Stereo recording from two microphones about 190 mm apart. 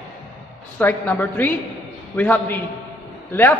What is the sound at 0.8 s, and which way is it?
A man's voice, 10° left (ahead or behind).